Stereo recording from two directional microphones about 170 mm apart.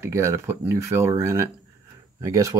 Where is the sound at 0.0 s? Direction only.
15° right (ahead or behind).